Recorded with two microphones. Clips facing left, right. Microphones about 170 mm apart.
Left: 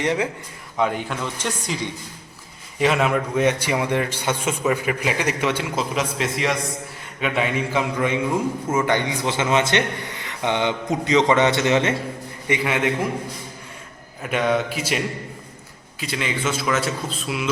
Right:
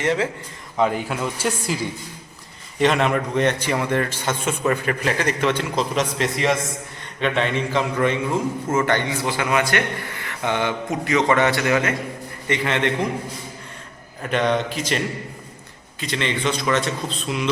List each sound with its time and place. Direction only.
0.0 s a man's voice: 15° left (ahead or behind)
0.8 s a man's voice: centre (ahead or behind); by 11.9 s 25° left (ahead or behind)
12.5 s a man's voice: 10° left (ahead or behind)
14.2 s a man's voice: 5° left (ahead or behind)